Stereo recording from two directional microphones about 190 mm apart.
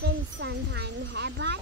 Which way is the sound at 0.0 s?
65° right (ahead or behind).